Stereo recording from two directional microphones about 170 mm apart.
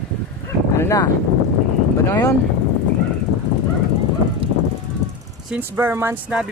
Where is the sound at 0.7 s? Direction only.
15° left (ahead or behind).